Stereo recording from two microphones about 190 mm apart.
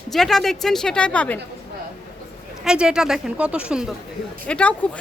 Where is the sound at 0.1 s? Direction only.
Centre (ahead or behind).